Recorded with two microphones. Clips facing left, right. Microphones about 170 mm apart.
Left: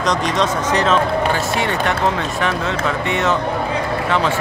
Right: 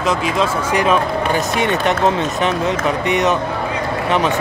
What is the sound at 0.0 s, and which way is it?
Speech, 5° right (ahead or behind).